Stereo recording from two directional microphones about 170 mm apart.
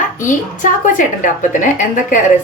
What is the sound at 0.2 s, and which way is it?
A woman's voice, 50° left (ahead or behind).